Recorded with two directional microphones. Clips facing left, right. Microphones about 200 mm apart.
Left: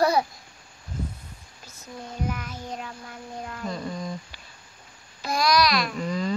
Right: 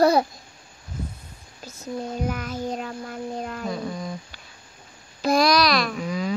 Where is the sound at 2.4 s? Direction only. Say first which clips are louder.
Right 7 dB; 35° right (ahead or behind).